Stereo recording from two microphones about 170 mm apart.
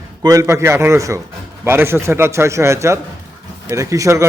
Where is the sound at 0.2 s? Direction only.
20° right (ahead or behind).